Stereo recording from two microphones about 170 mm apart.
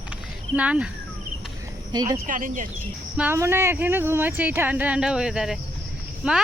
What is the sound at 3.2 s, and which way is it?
Speech, 15° right (ahead or behind).